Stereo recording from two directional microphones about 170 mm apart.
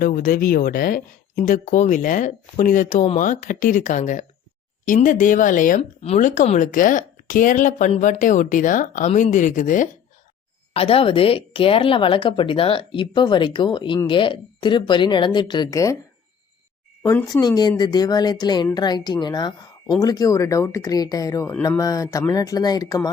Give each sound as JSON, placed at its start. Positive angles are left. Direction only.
{"t": 0.0, "sound": "speech", "side_deg": 55}
{"t": 10.8, "sound": "a woman's voice", "side_deg": 35}
{"t": 17.4, "sound": "a woman's voice", "side_deg": 25}